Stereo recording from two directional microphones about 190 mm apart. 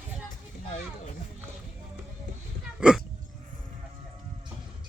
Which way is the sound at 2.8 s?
5° right (ahead or behind).